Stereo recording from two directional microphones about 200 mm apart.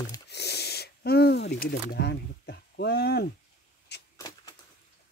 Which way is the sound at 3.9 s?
55° left (ahead or behind).